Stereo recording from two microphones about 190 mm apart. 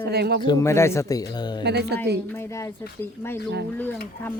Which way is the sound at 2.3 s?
15° left (ahead or behind).